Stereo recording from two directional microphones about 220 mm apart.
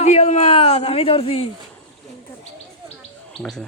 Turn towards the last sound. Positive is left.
turn(degrees=0)  # may be behind; listen again after turning